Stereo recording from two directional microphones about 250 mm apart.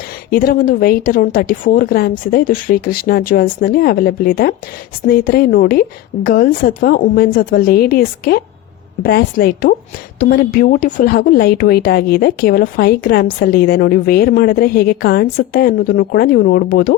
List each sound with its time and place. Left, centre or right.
0.3 s a woman's voice: left